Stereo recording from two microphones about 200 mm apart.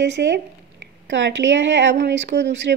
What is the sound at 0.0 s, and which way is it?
Speech, 60° right (ahead or behind).